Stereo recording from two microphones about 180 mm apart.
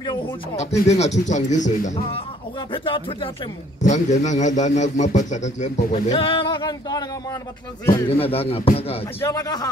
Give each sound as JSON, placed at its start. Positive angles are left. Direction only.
{"t": 0.6, "sound": "a man's voice", "side_deg": 40}
{"t": 2.7, "sound": "speech", "side_deg": 30}
{"t": 3.8, "sound": "a man's voice", "side_deg": 40}
{"t": 8.1, "sound": "a man's voice", "side_deg": 35}
{"t": 9.2, "sound": "speech", "side_deg": 20}